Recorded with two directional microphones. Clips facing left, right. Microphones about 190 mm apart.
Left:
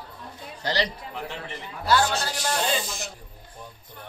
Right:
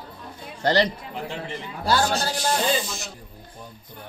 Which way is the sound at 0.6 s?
55° right (ahead or behind).